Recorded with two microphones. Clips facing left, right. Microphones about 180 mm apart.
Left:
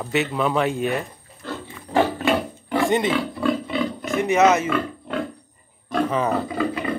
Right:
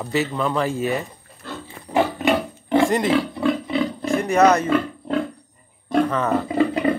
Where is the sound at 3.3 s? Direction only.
20° right (ahead or behind).